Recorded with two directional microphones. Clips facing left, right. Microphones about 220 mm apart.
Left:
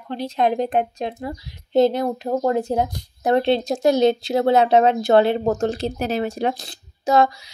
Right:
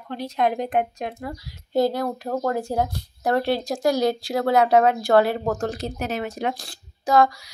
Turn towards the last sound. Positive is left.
turn(degrees=25)  # may be behind; listen again after turning